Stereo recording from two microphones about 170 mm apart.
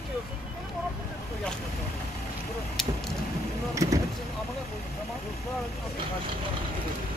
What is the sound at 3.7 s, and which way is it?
Speech, 20° right (ahead or behind).